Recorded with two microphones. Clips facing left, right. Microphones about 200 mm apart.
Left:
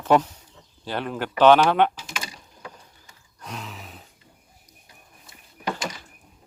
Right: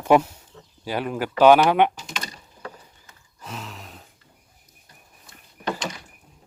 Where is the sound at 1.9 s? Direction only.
5° left (ahead or behind).